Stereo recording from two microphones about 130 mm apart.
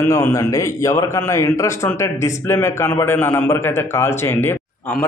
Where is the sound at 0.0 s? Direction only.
20° left (ahead or behind).